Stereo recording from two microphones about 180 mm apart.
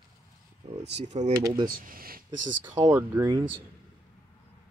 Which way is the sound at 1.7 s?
50° right (ahead or behind).